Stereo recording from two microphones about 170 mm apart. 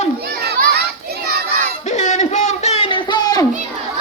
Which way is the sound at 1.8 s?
45° left (ahead or behind).